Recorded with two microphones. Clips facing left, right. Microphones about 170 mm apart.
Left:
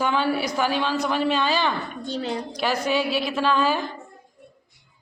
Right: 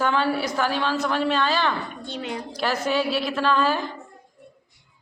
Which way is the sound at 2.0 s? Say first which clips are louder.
Left 4 dB; 35° left (ahead or behind).